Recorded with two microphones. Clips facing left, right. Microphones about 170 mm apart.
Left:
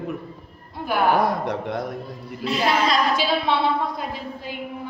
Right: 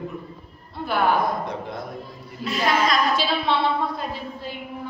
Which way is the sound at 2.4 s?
30° left (ahead or behind).